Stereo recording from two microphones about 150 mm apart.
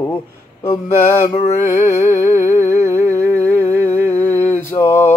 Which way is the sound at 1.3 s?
50° left (ahead or behind).